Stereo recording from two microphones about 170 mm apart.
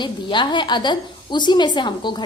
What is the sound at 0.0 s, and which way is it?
A woman's voice, 30° left (ahead or behind).